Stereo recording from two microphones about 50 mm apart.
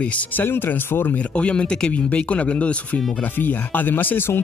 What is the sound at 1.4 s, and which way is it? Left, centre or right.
Speech, left.